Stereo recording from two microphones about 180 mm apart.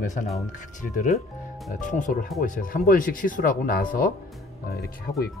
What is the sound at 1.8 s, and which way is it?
Speech, 45° left (ahead or behind).